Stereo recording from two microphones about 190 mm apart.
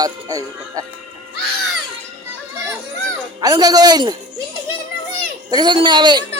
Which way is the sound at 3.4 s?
20° right (ahead or behind).